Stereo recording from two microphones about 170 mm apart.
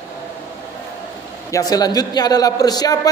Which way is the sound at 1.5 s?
20° left (ahead or behind).